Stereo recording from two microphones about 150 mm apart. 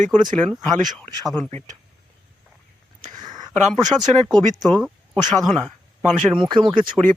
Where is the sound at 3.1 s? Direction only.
25° right (ahead or behind).